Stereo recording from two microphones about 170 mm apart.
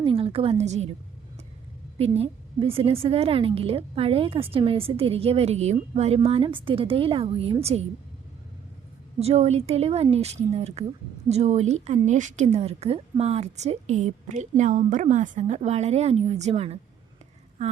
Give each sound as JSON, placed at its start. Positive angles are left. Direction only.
{"t": 0.0, "sound": "a woman's voice", "side_deg": -35}
{"t": 2.1, "sound": "a woman's voice", "side_deg": -35}
{"t": 9.1, "sound": "a woman's voice", "side_deg": -35}